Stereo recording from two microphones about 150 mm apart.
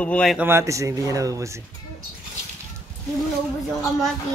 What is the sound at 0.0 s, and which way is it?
Speech, 5° left (ahead or behind).